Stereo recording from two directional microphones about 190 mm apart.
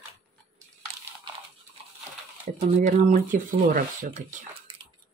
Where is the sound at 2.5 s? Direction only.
35° right (ahead or behind).